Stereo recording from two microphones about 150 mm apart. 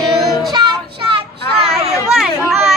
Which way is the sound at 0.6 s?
35° right (ahead or behind).